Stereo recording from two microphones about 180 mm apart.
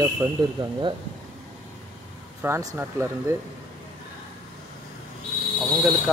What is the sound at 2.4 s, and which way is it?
Speech, 15° right (ahead or behind).